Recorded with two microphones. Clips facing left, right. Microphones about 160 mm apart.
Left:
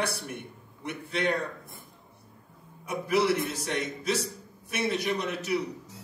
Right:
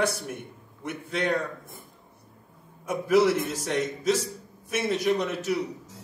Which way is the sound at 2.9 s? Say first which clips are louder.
Right 4 dB; centre (ahead or behind).